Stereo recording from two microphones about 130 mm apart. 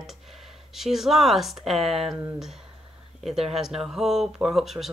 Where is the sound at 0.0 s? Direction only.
Centre (ahead or behind).